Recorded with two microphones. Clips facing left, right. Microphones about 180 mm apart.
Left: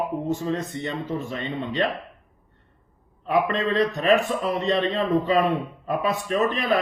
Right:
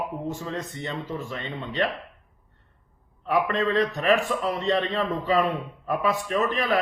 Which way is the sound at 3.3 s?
20° left (ahead or behind).